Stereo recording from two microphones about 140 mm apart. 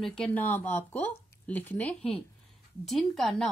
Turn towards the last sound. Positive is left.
turn(degrees=0)  # may be behind; listen again after turning